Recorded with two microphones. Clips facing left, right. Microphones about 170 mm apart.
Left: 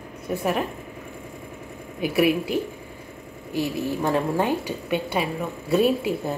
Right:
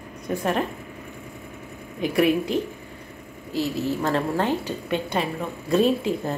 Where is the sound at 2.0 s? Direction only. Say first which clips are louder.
Even; 5° left (ahead or behind).